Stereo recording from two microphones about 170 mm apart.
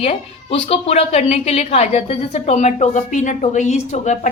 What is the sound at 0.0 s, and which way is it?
A woman's voice, 35° left (ahead or behind).